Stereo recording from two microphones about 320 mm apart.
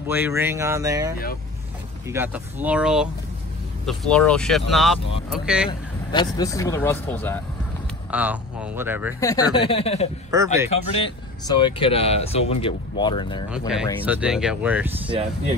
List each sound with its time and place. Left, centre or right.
0.1 s speech: centre
5.7 s speech: centre
8.1 s speech: centre
9.2 s speech: centre
10.3 s speech: centre
11.4 s speech: centre
14.0 s speech: centre
15.0 s speech: centre